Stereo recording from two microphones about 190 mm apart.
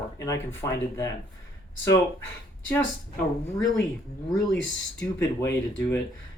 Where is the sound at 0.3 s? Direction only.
15° left (ahead or behind).